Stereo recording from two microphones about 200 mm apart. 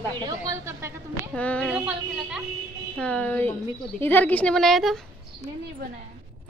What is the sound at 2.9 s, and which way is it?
A woman's voice, 5° left (ahead or behind).